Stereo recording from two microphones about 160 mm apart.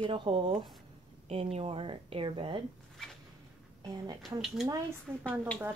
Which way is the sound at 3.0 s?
5° left (ahead or behind).